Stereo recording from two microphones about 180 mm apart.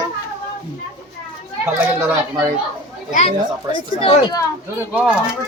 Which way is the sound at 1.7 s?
15° right (ahead or behind).